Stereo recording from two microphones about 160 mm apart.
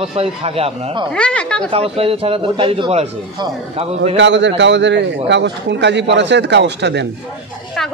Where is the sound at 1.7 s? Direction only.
35° right (ahead or behind).